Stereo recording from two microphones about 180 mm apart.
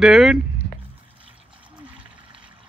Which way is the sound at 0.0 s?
Centre (ahead or behind).